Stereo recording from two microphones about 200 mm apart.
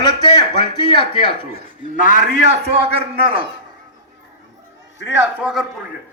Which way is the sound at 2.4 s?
30° right (ahead or behind).